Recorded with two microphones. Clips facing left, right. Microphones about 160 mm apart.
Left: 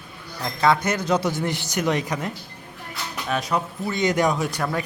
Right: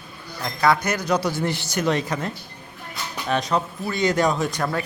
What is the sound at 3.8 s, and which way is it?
A man's voice, 20° left (ahead or behind).